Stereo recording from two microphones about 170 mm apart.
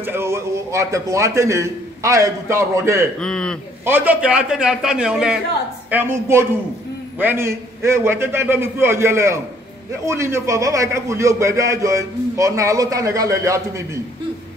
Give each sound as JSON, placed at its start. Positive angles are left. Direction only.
{"t": 0.0, "sound": "a man's voice", "side_deg": -15}
{"t": 3.2, "sound": "a man's voice", "side_deg": 5}
{"t": 3.8, "sound": "a man's voice", "side_deg": -10}